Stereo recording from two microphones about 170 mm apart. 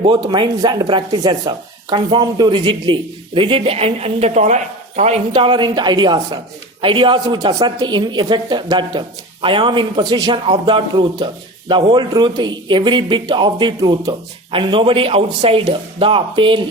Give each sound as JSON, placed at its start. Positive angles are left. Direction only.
{"t": 0.0, "sound": "speech", "side_deg": -25}